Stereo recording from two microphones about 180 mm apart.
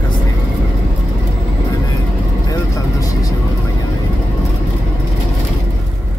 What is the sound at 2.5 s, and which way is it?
Vehicle, 20° left (ahead or behind).